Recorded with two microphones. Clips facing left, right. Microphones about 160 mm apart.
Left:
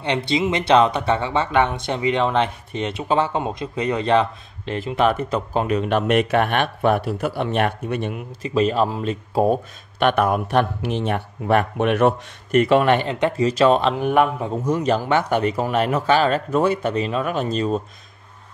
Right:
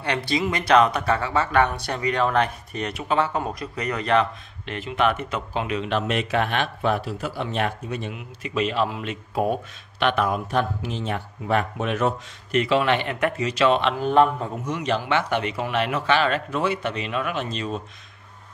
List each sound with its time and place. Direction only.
0.3 s speech: 25° left (ahead or behind); by 8.2 s 55° left (ahead or behind)
8.4 s speech: 35° left (ahead or behind)
13.1 s speech: 25° left (ahead or behind)
13.6 s speech: 40° left (ahead or behind)
13.9 s a man's voice: 15° left (ahead or behind)
14.6 s speech: 45° left (ahead or behind)